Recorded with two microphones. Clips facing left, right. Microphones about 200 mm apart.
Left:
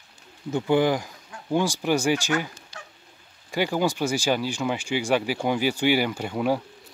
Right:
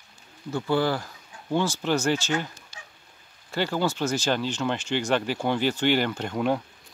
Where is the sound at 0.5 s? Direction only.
15° left (ahead or behind).